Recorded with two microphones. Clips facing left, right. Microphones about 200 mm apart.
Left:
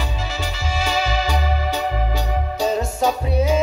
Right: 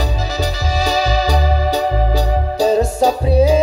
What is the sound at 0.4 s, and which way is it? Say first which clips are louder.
Organ: right 6 dB; 40° right (ahead or behind).